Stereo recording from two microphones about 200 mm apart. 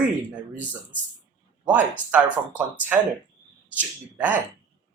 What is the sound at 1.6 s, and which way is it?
Speech, 5° right (ahead or behind).